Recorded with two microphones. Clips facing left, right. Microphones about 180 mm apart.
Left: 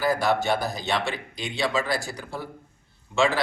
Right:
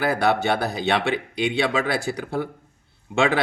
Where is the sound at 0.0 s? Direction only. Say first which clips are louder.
Right 2 dB; 65° right (ahead or behind).